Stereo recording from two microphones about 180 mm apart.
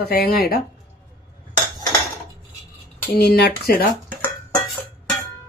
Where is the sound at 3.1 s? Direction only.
65° left (ahead or behind).